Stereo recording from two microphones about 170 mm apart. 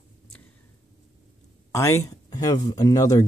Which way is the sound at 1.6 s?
15° left (ahead or behind).